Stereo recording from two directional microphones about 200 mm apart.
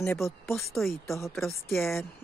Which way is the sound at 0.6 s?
Centre (ahead or behind).